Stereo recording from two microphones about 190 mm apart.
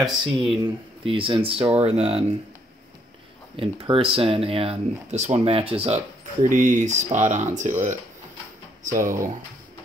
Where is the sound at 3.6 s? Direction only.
30° right (ahead or behind).